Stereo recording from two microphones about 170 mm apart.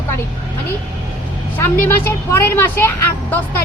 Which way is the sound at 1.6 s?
10° left (ahead or behind).